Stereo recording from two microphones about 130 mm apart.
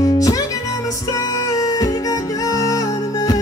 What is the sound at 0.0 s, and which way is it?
Music, 25° left (ahead or behind).